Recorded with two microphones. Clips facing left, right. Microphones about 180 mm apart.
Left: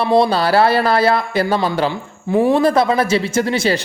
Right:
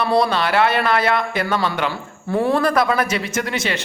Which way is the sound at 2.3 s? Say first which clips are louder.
Left 4 dB; 15° left (ahead or behind).